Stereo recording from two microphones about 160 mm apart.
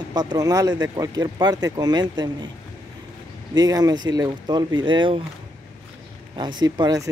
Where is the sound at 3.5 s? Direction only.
25° right (ahead or behind).